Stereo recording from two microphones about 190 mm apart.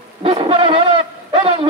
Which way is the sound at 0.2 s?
30° right (ahead or behind).